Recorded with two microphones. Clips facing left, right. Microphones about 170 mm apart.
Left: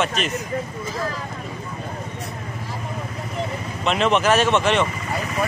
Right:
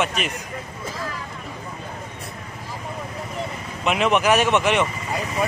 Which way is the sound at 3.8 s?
10° right (ahead or behind).